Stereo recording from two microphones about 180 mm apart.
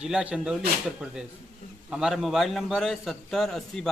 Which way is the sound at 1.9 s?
5° right (ahead or behind).